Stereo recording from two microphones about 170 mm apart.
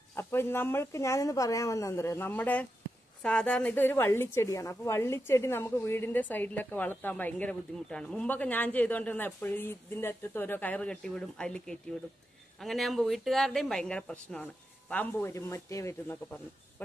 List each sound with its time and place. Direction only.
0.1 s a woman's voice: 15° left (ahead or behind)